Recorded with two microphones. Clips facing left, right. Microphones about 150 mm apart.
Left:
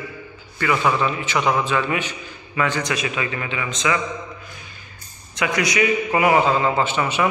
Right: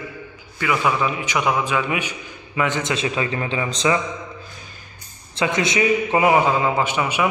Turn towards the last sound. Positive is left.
turn(degrees=-10)  # may be behind; listen again after turning